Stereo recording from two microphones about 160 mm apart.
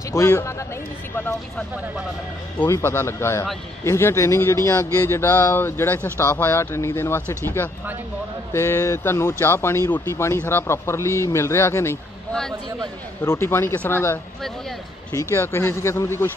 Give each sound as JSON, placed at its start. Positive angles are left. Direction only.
{"t": 0.1, "sound": "a man's voice", "side_deg": 20}
{"t": 2.6, "sound": "speech", "side_deg": 15}
{"t": 12.3, "sound": "speech", "side_deg": 5}
{"t": 13.2, "sound": "speech", "side_deg": 15}
{"t": 15.3, "sound": "speech", "side_deg": 15}